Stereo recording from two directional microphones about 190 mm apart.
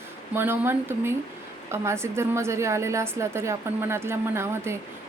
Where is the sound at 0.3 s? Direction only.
10° right (ahead or behind).